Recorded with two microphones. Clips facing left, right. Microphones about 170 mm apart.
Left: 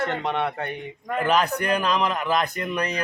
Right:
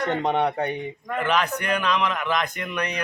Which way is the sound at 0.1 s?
20° right (ahead or behind).